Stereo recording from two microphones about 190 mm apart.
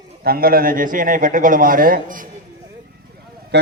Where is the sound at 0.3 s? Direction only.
50° right (ahead or behind).